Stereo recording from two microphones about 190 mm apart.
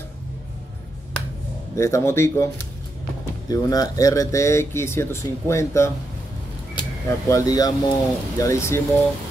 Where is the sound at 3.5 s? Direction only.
20° left (ahead or behind).